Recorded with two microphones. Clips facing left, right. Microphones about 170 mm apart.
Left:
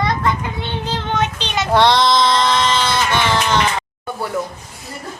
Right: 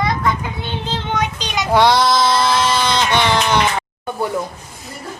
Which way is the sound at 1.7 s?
5° right (ahead or behind).